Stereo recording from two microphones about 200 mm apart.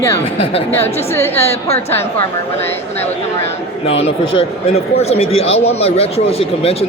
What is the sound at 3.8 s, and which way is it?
A man's voice, 30° left (ahead or behind).